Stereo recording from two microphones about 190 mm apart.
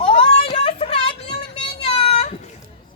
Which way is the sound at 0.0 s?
30° left (ahead or behind).